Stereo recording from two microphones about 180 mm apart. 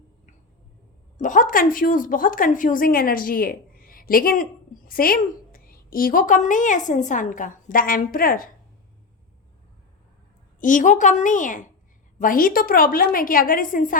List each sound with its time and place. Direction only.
1.2 s a woman's voice: 45° left (ahead or behind)
10.6 s a woman's voice: 45° left (ahead or behind)